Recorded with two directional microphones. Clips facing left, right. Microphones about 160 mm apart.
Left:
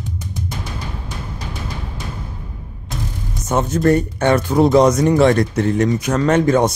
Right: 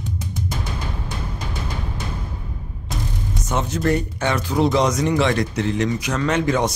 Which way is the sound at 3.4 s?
50° left (ahead or behind).